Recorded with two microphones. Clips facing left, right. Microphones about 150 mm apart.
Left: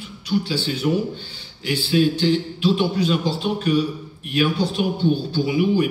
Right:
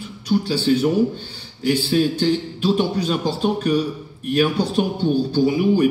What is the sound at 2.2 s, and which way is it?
A man's voice, 45° right (ahead or behind).